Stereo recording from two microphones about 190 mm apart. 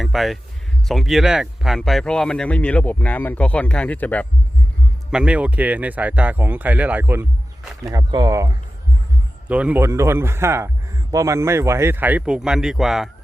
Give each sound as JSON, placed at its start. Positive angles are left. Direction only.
{"t": 0.0, "sound": "speech", "side_deg": 0}
{"t": 5.1, "sound": "a man's voice", "side_deg": -5}